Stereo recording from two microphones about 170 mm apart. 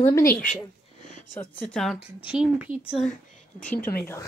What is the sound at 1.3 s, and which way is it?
Speech, 5° left (ahead or behind).